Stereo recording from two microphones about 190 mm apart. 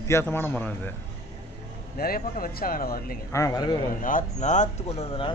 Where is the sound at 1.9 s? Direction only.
50° left (ahead or behind).